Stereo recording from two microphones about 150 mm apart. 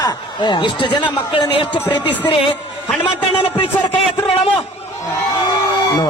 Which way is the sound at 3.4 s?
35° left (ahead or behind).